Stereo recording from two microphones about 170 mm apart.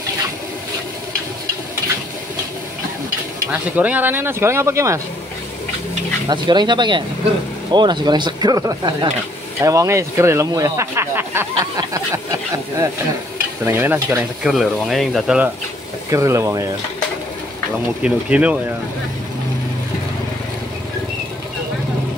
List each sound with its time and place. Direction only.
3.7 s speech: 10° right (ahead or behind)
6.2 s speech: 25° right (ahead or behind)
14.5 s speech: centre (ahead or behind)
16.1 s speech: 15° right (ahead or behind)
18.0 s speech: 5° right (ahead or behind)